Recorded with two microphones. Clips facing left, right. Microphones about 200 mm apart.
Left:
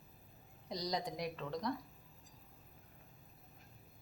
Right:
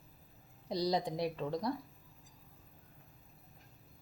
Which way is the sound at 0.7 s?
30° right (ahead or behind).